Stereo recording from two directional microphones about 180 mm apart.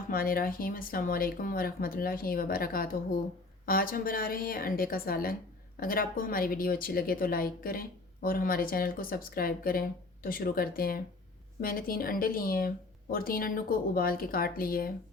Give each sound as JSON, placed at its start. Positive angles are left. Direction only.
{"t": 0.1, "sound": "a woman's voice", "side_deg": 55}